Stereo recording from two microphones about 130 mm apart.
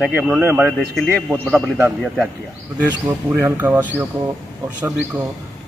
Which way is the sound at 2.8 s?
15° right (ahead or behind).